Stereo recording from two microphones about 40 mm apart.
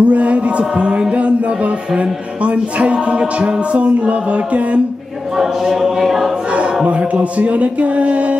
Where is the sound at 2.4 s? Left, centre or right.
Right.